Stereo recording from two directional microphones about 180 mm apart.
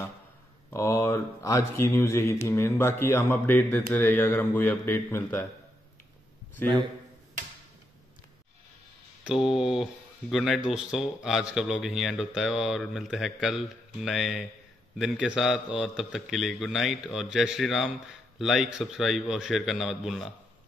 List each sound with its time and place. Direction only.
0.7 s speech: 15° left (ahead or behind)
6.6 s speech: 10° left (ahead or behind)
9.2 s a man's voice: centre (ahead or behind)